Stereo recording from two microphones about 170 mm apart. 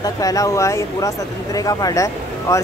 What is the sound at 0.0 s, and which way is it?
Speech, 20° left (ahead or behind).